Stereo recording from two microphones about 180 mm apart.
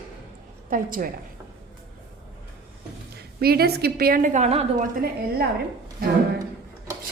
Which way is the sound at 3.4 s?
60° right (ahead or behind).